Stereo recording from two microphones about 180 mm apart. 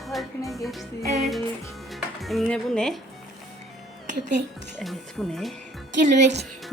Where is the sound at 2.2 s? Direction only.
Centre (ahead or behind).